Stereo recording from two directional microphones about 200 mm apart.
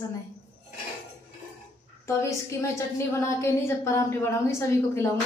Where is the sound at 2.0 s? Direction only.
15° left (ahead or behind).